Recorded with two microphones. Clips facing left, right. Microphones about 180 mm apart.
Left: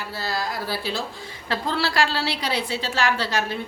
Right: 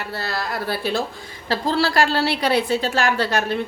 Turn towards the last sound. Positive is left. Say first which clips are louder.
# right 3 dB
turn(degrees=-55)  # may be behind; listen again after turning